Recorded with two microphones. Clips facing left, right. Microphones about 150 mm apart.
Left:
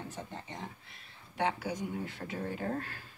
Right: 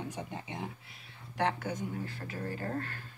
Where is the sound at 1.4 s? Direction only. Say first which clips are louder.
Right 1 dB; 5° left (ahead or behind).